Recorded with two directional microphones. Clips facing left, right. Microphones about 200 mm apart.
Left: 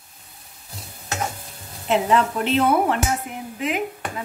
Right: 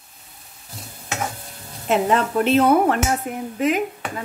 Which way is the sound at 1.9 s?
45° right (ahead or behind).